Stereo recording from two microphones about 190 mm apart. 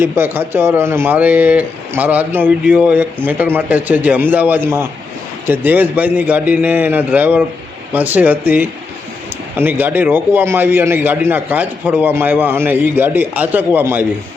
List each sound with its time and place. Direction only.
0.0 s a man's voice: 10° right (ahead or behind)